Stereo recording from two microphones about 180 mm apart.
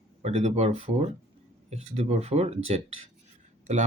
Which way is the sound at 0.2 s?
35° right (ahead or behind).